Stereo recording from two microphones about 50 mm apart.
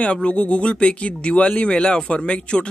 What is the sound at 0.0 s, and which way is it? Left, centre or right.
Speech, left.